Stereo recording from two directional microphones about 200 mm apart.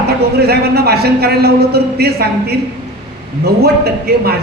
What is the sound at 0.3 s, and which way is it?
A man's voice, 50° right (ahead or behind).